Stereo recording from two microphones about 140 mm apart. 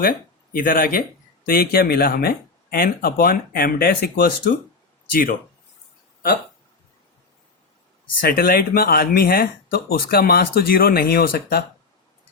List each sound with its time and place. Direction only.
0.0 s speech: 90° left
8.2 s speech: 90° left